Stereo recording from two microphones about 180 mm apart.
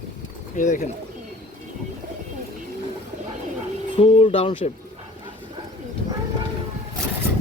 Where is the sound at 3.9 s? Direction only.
30° left (ahead or behind).